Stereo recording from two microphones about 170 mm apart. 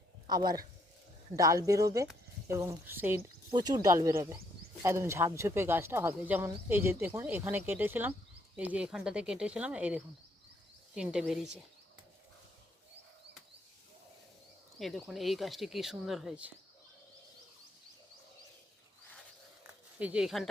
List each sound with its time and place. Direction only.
0.3 s speech: 25° right (ahead or behind)
3.5 s speech: 25° right (ahead or behind); by 11.3 s 5° right (ahead or behind)
14.8 s speech: centre (ahead or behind)
20.0 s speech: 5° right (ahead or behind)